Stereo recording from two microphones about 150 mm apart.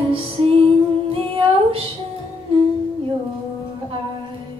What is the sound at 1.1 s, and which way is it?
Humming, 35° right (ahead or behind).